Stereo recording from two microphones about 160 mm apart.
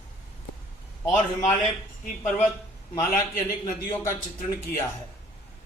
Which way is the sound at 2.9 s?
15° left (ahead or behind).